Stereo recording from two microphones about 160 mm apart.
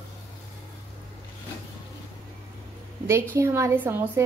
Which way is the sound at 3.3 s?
20° right (ahead or behind).